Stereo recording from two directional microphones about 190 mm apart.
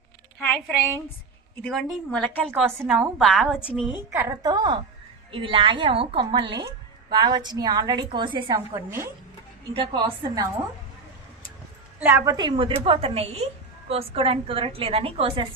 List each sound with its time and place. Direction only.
1.6 s a woman's voice: 5° left (ahead or behind)
2.6 s a woman's voice: 10° right (ahead or behind)
4.1 s a woman's voice: 15° right (ahead or behind)
9.7 s a woman's voice: 25° right (ahead or behind)
11.9 s a woman's voice: 10° right (ahead or behind); by 15.4 s 30° right (ahead or behind)